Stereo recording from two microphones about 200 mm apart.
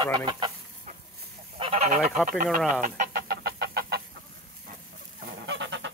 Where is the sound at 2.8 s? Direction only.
45° right (ahead or behind).